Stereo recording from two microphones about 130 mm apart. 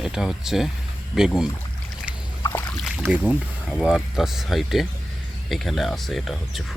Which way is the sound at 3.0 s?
20° right (ahead or behind).